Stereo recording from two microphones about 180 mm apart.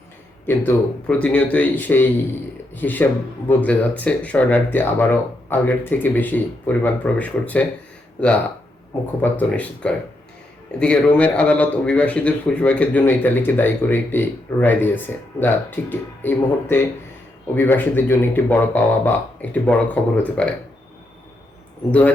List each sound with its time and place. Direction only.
0.4 s a man's voice: 10° left (ahead or behind)
9.3 s a man's voice: 10° left (ahead or behind)